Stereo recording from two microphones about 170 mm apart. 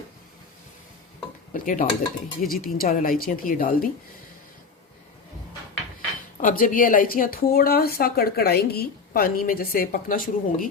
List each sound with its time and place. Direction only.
1.5 s speech: 50° left (ahead or behind)
6.3 s speech: 55° left (ahead or behind)